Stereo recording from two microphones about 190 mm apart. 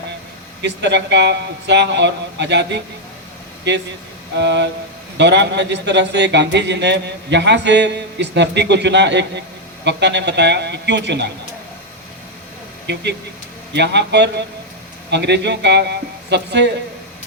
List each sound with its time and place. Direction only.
0.6 s a man's voice: 65° right (ahead or behind)
4.4 s music: 65° right (ahead or behind)
5.1 s a man's voice: 65° right (ahead or behind)
12.9 s a man's voice: 65° right (ahead or behind)